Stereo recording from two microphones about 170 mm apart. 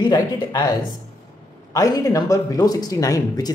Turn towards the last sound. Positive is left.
turn(degrees=20)  # may be behind; listen again after turning